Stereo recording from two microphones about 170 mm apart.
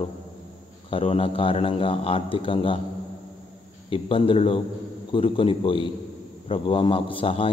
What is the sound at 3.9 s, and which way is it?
A man's voice, 30° left (ahead or behind).